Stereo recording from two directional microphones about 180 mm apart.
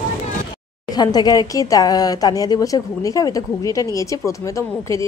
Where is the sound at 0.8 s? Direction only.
20° left (ahead or behind).